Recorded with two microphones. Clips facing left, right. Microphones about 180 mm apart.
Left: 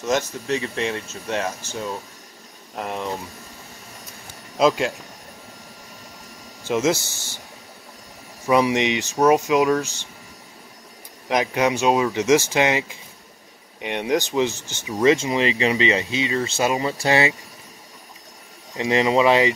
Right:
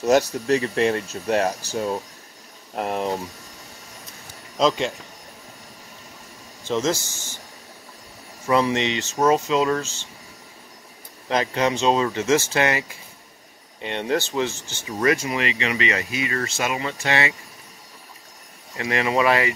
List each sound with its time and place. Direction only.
0.0 s speech: 35° right (ahead or behind)
4.6 s speech: 5° left (ahead or behind)
8.5 s speech: 15° left (ahead or behind)
11.2 s speech: 15° left (ahead or behind)
15.0 s speech: 25° left (ahead or behind)
18.8 s speech: 25° left (ahead or behind)